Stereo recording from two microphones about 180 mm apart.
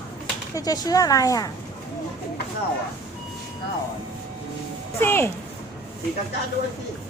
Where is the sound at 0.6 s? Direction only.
20° left (ahead or behind).